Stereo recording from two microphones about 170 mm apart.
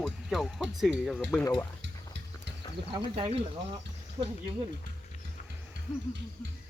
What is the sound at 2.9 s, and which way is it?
Speech, 30° right (ahead or behind).